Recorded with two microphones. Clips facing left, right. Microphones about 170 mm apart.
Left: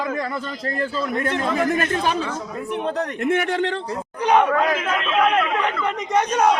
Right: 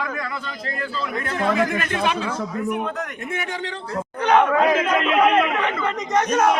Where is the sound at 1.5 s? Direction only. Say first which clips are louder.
Left 2 dB; 40° left (ahead or behind).